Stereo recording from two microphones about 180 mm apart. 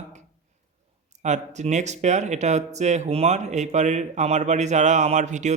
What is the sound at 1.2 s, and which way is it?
A man's voice, 40° right (ahead or behind).